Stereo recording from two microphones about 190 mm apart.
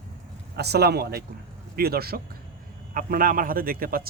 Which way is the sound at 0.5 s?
60° right (ahead or behind).